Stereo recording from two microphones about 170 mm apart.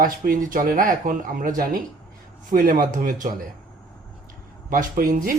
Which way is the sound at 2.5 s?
55° right (ahead or behind).